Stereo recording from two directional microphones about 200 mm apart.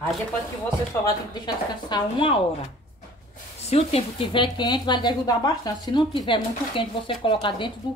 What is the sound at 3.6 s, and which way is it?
Speech, 30° left (ahead or behind).